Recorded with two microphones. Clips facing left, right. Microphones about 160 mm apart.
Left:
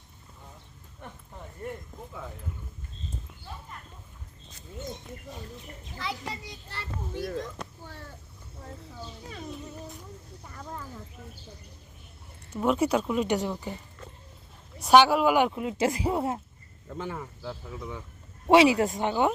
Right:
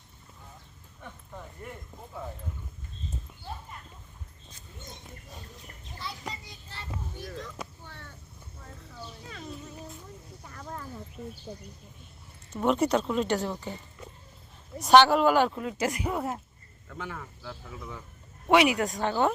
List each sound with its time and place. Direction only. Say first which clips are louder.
6.4 s a child's voice: left 4 dB; 65° left (ahead or behind)
7.6 s a sound: even; 5° right (ahead or behind)
12.5 s speech: even; 5° left (ahead or behind)
14.8 s speech: even; 10° left (ahead or behind)